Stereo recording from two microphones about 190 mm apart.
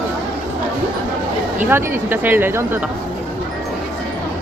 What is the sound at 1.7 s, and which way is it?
Speech, 10° right (ahead or behind).